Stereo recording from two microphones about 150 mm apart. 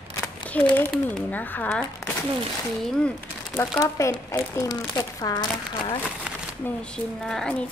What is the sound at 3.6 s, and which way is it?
Speech, 20° left (ahead or behind).